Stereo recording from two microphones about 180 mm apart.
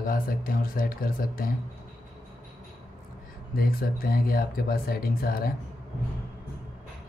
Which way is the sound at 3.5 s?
55° left (ahead or behind).